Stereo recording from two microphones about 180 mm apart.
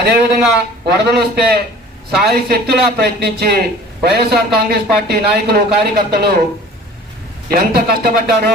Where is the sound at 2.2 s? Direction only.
65° right (ahead or behind).